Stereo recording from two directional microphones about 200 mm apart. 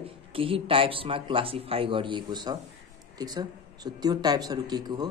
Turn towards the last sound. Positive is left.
turn(degrees=-20)  # may be behind; listen again after turning